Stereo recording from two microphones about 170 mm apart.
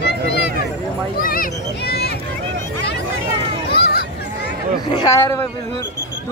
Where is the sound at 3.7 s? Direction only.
65° left (ahead or behind).